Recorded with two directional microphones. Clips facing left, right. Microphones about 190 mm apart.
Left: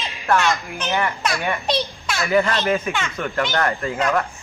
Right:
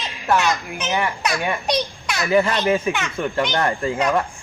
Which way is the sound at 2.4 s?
15° right (ahead or behind).